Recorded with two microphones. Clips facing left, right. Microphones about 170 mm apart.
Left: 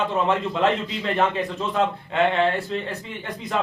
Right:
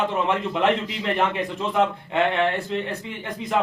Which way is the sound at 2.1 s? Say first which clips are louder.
Left 1 dB; 20° right (ahead or behind).